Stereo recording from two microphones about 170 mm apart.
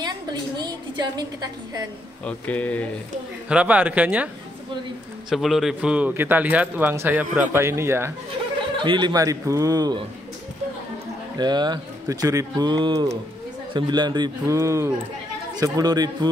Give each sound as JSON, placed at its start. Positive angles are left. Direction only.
{"t": 0.0, "sound": "a woman's voice", "side_deg": -25}
{"t": 2.2, "sound": "speech", "side_deg": 10}
{"t": 3.4, "sound": "a man's voice", "side_deg": -5}
{"t": 5.3, "sound": "a man's voice", "side_deg": 0}
{"t": 7.2, "sound": "a man's voice", "side_deg": -45}
{"t": 7.5, "sound": "a man's voice", "side_deg": -15}
{"t": 8.7, "sound": "speech", "side_deg": -25}
{"t": 11.3, "sound": "speech", "side_deg": -25}